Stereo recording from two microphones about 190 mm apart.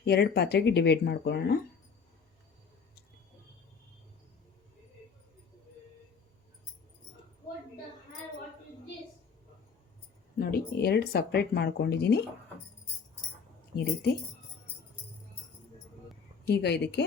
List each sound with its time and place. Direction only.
0.0 s speech: 60° left (ahead or behind)
10.3 s a sound: 50° left (ahead or behind)
10.8 s speech: 55° left (ahead or behind)
16.5 s speech: 60° left (ahead or behind)